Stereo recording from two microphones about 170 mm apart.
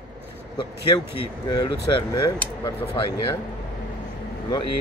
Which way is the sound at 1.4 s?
25° left (ahead or behind).